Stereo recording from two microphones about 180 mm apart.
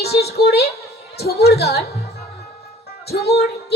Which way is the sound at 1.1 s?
60° left (ahead or behind).